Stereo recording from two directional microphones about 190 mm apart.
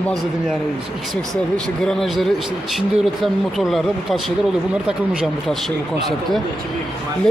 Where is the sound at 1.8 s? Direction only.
Centre (ahead or behind).